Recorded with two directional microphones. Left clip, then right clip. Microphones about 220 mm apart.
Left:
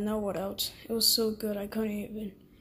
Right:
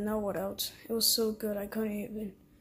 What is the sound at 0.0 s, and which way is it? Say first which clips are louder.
A woman's voice: left 1 dB; centre (ahead or behind).